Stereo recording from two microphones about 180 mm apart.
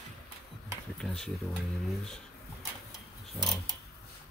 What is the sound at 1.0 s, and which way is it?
Speech, 5° left (ahead or behind).